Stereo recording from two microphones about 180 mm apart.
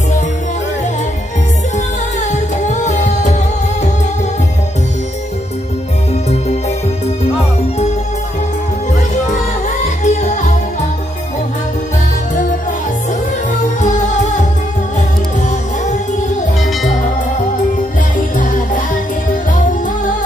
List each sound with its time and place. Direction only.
2.6 s music: 40° left (ahead or behind)
10.0 s music: 40° left (ahead or behind)
13.7 s music: 40° left (ahead or behind)